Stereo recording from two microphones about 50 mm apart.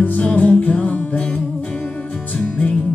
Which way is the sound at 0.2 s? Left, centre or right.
Left.